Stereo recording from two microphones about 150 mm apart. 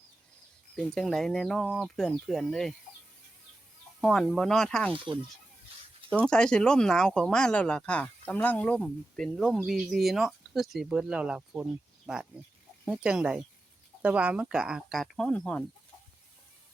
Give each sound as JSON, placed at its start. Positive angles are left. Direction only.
{"t": 0.8, "sound": "speech", "side_deg": 5}
{"t": 4.0, "sound": "speech", "side_deg": 0}
{"t": 5.7, "sound": "a sound", "side_deg": -40}
{"t": 6.2, "sound": "speech", "side_deg": 5}